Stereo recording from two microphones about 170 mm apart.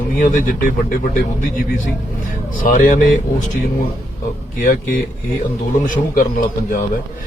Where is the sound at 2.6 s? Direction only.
50° left (ahead or behind).